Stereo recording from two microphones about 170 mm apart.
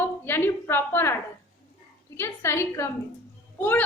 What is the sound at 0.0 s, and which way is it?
A woman's voice, 10° left (ahead or behind).